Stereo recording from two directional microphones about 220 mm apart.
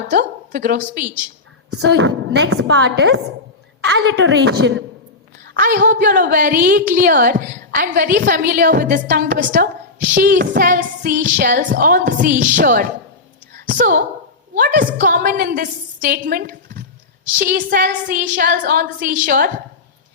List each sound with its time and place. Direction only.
0.1 s a woman's voice: 35° right (ahead or behind)
1.8 s a woman's voice: 55° right (ahead or behind)
5.5 s a woman's voice: 40° right (ahead or behind)